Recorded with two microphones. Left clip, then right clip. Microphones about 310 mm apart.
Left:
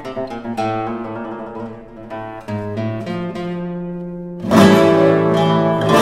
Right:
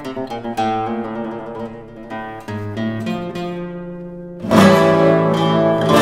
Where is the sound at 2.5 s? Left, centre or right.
Right.